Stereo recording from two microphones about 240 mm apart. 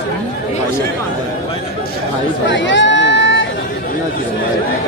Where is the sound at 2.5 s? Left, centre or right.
Left.